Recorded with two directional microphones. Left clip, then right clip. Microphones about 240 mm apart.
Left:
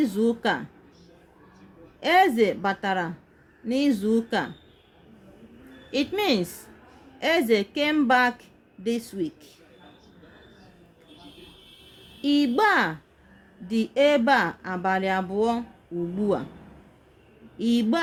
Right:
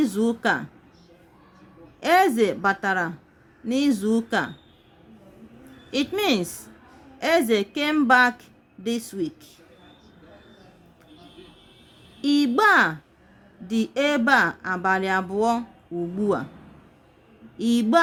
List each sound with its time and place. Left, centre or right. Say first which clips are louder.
0.0 s a woman's voice: right 1 dB; centre
2.0 s a woman's voice: right 1 dB; centre
5.9 s a woman's voice: right 1 dB; centre
12.2 s a woman's voice: right 2 dB; centre
17.6 s a woman's voice: right 5 dB; centre